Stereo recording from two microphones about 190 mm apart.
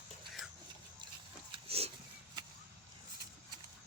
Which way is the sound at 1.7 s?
30° right (ahead or behind).